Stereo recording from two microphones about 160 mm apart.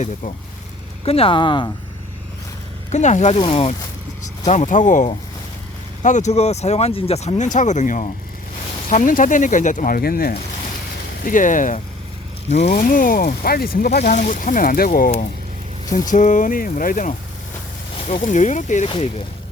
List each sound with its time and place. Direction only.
0.0 s speech: 45° left (ahead or behind); by 1.7 s 30° left (ahead or behind)
2.9 s speech: 45° left (ahead or behind)
4.4 s speech: 50° left (ahead or behind); by 10.3 s 70° left (ahead or behind)
11.3 s speech: 55° left (ahead or behind)
15.9 s speech: 50° left (ahead or behind)
18.9 s speech: 35° left (ahead or behind)